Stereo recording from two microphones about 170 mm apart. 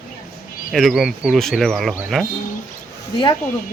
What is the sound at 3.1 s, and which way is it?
Speech, 25° left (ahead or behind).